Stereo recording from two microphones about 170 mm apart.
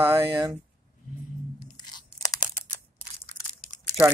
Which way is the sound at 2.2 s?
20° left (ahead or behind).